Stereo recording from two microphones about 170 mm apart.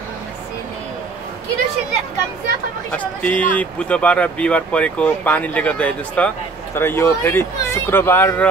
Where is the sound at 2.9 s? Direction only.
10° left (ahead or behind).